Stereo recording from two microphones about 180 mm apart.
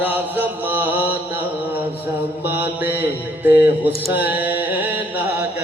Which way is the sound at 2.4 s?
10° right (ahead or behind).